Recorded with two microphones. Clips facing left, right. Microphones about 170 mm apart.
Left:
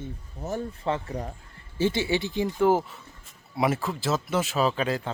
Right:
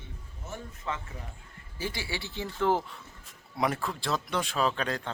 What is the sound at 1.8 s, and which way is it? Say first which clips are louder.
Speech: left 11 dB; 25° left (ahead or behind).